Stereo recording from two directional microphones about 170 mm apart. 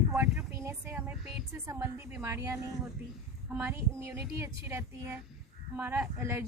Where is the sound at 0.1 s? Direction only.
15° right (ahead or behind).